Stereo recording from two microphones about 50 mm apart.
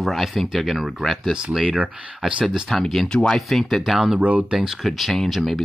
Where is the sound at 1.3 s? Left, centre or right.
Centre.